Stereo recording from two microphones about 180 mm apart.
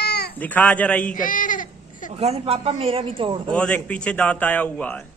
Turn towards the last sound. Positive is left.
turn(degrees=5)  # may be behind; listen again after turning